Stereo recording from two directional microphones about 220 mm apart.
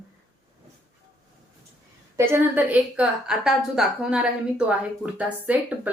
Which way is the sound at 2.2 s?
10° right (ahead or behind).